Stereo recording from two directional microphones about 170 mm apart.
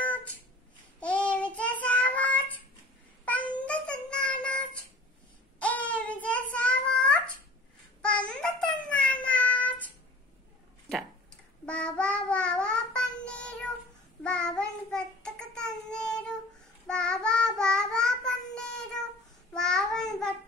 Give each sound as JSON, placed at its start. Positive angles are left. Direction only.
{"t": 0.0, "sound": "a sound", "side_deg": 10}
{"t": 0.9, "sound": "child singing", "side_deg": 5}
{"t": 8.3, "sound": "child singing", "side_deg": 5}
{"t": 11.6, "sound": "child singing", "side_deg": 5}